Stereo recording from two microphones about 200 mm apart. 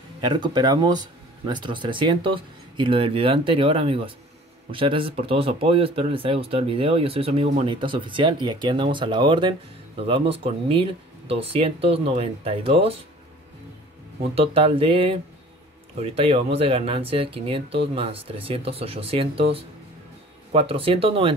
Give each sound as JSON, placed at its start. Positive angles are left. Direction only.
{"t": 0.2, "sound": "speech", "side_deg": -20}
{"t": 14.3, "sound": "speech", "side_deg": -30}
{"t": 20.5, "sound": "speech", "side_deg": -30}